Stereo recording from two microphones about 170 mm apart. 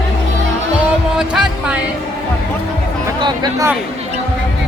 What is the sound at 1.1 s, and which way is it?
Music, 5° right (ahead or behind).